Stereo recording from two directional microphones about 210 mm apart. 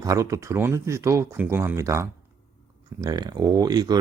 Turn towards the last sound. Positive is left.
turn(degrees=-20)  # may be behind; listen again after turning